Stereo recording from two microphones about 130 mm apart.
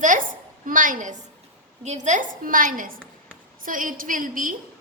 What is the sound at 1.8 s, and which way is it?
A woman's voice, 65° right (ahead or behind).